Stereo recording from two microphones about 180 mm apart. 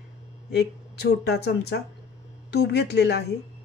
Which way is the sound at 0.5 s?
65° left (ahead or behind).